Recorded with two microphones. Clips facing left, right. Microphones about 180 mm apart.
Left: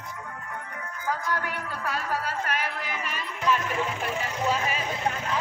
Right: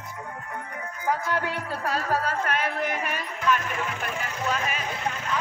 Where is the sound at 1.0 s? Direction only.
25° right (ahead or behind).